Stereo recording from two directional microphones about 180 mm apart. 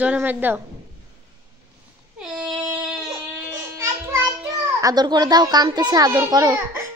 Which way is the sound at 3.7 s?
15° right (ahead or behind).